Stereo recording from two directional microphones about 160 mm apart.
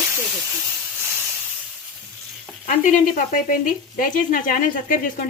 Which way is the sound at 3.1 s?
60° left (ahead or behind).